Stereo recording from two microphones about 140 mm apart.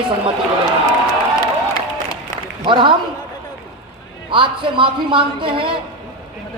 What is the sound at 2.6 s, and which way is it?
Speech, 35° right (ahead or behind).